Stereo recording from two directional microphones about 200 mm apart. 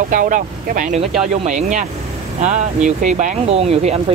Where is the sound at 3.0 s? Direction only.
40° right (ahead or behind).